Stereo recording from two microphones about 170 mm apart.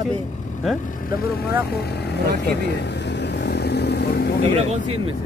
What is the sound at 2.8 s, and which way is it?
Vehicle, 90° left.